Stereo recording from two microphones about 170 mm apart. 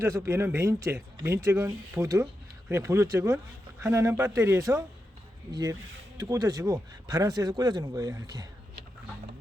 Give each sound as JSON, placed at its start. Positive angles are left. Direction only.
{"t": 0.0, "sound": "a man's voice", "side_deg": -15}